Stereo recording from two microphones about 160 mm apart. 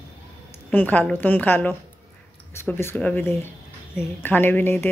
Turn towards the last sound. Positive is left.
turn(degrees=15)  # may be behind; listen again after turning